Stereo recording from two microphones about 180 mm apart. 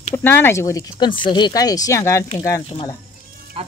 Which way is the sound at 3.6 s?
30° right (ahead or behind).